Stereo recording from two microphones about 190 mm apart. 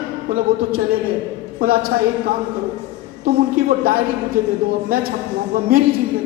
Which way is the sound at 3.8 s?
50° right (ahead or behind).